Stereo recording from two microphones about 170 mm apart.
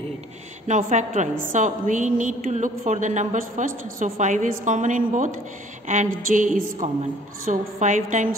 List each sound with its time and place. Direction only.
0.7 s a woman's voice: 45° right (ahead or behind)